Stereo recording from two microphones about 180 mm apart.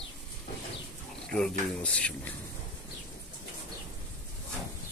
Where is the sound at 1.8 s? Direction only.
5° left (ahead or behind).